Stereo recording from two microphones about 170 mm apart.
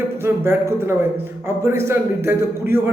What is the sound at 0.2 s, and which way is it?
A man's voice, 15° right (ahead or behind).